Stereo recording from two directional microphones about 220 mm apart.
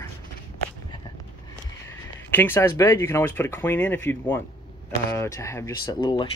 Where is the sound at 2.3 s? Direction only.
10° left (ahead or behind).